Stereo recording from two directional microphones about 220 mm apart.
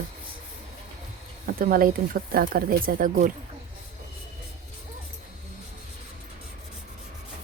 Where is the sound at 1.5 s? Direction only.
40° right (ahead or behind).